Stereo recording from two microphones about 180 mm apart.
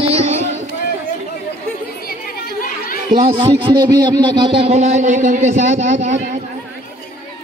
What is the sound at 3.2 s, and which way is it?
A man's voice, 25° right (ahead or behind).